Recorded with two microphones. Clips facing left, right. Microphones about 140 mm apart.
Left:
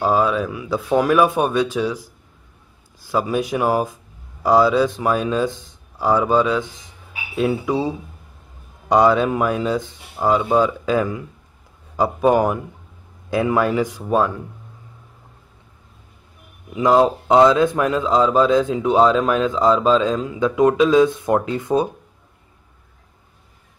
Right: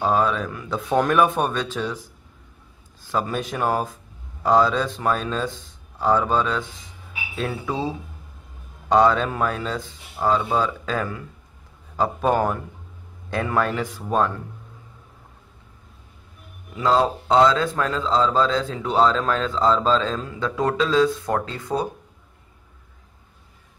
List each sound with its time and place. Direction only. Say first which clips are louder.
0.0 s a man's voice: left 3 dB; 5° left (ahead or behind)
16.7 s a man's voice: left 5 dB; 20° left (ahead or behind)